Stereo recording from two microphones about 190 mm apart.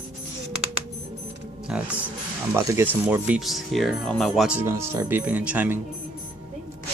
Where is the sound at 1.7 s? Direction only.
5° right (ahead or behind).